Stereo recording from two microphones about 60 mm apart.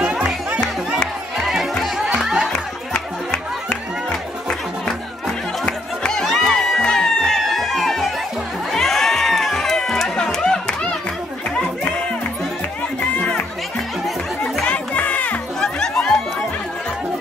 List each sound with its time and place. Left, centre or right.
1.4 s music: centre
2.5 s music: left
5.7 s music: centre
14.6 s chatter: left
15.6 s music: centre